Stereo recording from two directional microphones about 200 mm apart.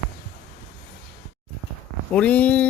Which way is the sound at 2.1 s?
5° left (ahead or behind).